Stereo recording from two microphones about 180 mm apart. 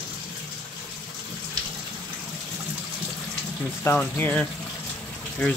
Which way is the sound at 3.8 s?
10° left (ahead or behind).